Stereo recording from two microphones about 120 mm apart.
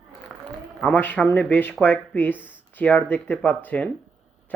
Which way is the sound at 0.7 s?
10° left (ahead or behind).